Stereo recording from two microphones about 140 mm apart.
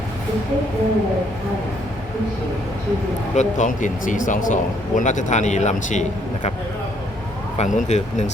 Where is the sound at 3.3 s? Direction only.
65° left (ahead or behind).